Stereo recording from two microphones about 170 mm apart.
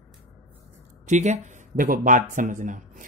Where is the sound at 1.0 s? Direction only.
45° right (ahead or behind).